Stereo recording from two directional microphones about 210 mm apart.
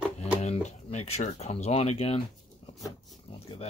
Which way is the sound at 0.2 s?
30° left (ahead or behind).